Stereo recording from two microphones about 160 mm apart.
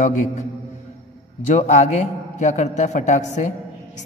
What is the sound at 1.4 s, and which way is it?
A man's voice, 50° left (ahead or behind).